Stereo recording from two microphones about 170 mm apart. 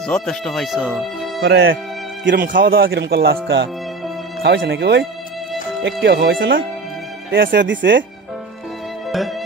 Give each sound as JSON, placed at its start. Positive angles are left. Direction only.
{"t": 0.0, "sound": "speech", "side_deg": 5}
{"t": 1.4, "sound": "speech", "side_deg": -75}
{"t": 6.0, "sound": "speech", "side_deg": -80}
{"t": 7.2, "sound": "speech", "side_deg": -90}